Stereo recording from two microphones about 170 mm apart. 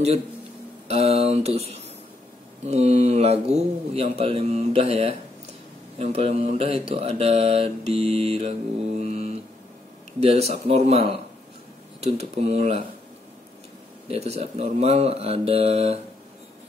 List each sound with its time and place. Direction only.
0.8 s speech: 35° right (ahead or behind)
2.6 s mantra: 40° right (ahead or behind)
14.0 s mantra: 35° right (ahead or behind)